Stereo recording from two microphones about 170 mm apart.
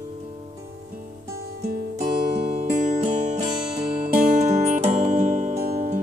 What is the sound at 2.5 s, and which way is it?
Music, 45° right (ahead or behind).